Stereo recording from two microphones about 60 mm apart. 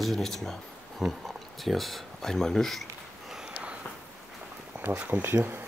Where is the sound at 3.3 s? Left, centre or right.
Centre.